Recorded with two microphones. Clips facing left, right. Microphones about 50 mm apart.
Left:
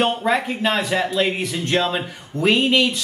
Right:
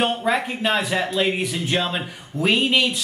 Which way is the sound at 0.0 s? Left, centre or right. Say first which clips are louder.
Left 2 dB; centre.